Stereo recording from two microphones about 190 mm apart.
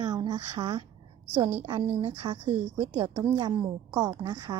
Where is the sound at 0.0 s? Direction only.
20° right (ahead or behind).